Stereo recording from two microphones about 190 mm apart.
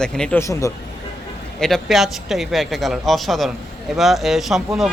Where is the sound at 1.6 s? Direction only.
Centre (ahead or behind).